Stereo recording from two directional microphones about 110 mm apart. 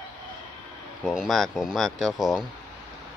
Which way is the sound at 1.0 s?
Centre (ahead or behind).